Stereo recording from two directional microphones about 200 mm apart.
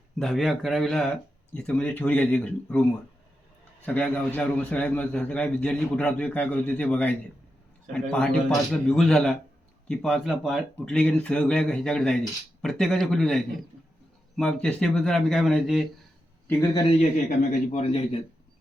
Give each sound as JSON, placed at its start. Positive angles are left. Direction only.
{"t": 0.2, "sound": "speech", "side_deg": 0}
{"t": 3.8, "sound": "a man's voice", "side_deg": 5}
{"t": 16.5, "sound": "a man's voice", "side_deg": 10}
{"t": 17.0, "sound": "a man's voice", "side_deg": 35}